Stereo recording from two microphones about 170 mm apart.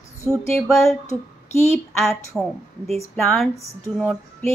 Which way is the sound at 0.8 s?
15° left (ahead or behind).